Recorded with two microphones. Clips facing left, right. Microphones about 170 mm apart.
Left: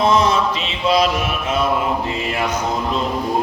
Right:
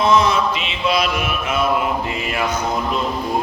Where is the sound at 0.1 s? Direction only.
40° left (ahead or behind).